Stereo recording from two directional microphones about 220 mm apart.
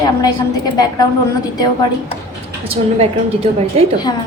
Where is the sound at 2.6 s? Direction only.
25° right (ahead or behind).